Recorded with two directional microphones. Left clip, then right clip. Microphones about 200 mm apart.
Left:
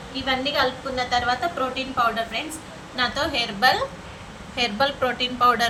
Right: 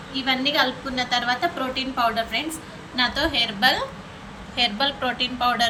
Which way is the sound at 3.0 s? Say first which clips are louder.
Right 2 dB; 20° left (ahead or behind).